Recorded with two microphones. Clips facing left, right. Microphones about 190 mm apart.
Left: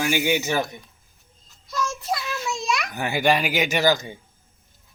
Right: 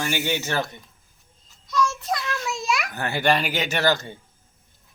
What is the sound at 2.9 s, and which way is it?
A man's voice, 10° left (ahead or behind).